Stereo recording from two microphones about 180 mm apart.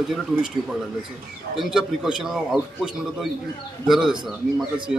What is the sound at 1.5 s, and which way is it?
A man's voice, centre (ahead or behind).